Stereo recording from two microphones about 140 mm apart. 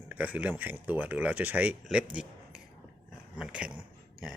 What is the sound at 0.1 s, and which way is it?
Speech, 10° right (ahead or behind).